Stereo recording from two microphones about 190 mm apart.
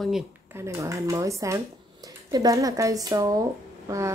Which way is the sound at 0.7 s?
15° right (ahead or behind).